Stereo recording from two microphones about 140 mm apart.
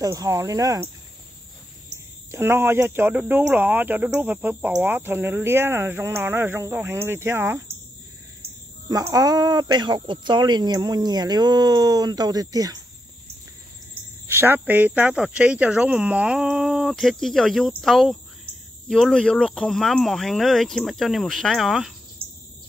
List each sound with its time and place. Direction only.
0.0 s speech: 25° right (ahead or behind)
2.3 s speech: 15° right (ahead or behind)
8.8 s speech: 25° right (ahead or behind)
14.2 s speech: 15° right (ahead or behind); by 21.9 s centre (ahead or behind)
22.2 s bird: 40° right (ahead or behind)